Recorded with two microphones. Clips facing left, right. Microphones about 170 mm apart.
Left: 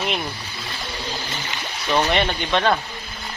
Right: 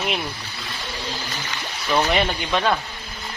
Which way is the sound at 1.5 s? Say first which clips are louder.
Even; 15° left (ahead or behind).